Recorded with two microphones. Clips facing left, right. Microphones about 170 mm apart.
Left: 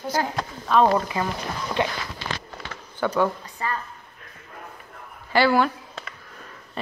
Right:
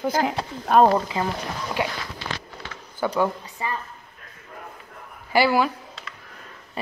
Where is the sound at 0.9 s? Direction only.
20° right (ahead or behind).